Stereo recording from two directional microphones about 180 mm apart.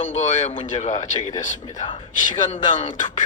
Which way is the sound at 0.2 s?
40° left (ahead or behind).